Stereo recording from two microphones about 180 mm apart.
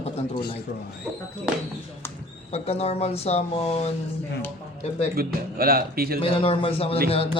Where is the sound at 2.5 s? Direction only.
35° left (ahead or behind).